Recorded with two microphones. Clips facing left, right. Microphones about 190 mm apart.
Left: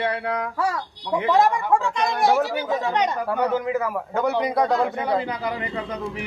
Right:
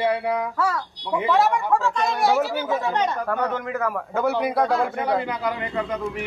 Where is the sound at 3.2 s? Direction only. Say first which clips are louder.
Left 3 dB; 10° left (ahead or behind).